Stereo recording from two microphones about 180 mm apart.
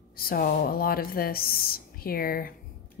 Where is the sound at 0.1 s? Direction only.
55° left (ahead or behind).